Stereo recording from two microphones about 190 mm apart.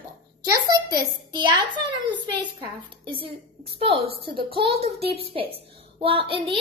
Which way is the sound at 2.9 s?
25° right (ahead or behind).